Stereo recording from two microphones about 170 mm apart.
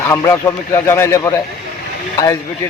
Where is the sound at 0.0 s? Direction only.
15° left (ahead or behind).